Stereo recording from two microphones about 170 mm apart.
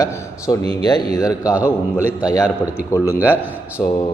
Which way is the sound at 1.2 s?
20° left (ahead or behind).